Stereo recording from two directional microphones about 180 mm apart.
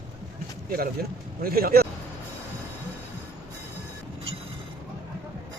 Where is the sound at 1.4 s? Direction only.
55° right (ahead or behind).